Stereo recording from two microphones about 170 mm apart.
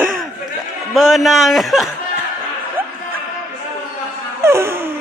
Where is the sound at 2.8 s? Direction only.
10° right (ahead or behind).